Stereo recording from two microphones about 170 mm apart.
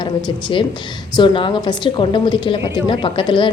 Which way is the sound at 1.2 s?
30° left (ahead or behind).